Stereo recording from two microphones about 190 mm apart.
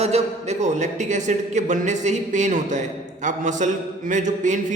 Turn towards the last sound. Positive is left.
turn(degrees=-40)  # may be behind; listen again after turning